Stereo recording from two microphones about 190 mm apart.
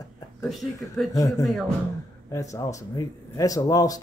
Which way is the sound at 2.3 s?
15° left (ahead or behind).